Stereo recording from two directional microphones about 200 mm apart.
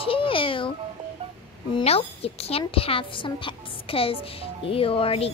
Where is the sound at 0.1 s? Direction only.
25° left (ahead or behind).